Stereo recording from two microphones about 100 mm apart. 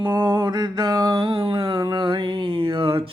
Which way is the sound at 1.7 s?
45° right (ahead or behind).